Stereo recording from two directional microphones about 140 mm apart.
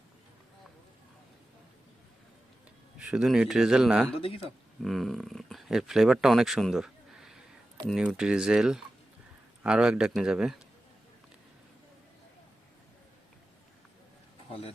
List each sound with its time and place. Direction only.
3.0 s a man's voice: 5° right (ahead or behind)
4.2 s speech: 40° left (ahead or behind)
4.8 s a man's voice: centre (ahead or behind)